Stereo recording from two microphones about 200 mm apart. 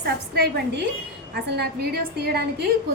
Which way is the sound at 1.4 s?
55° right (ahead or behind).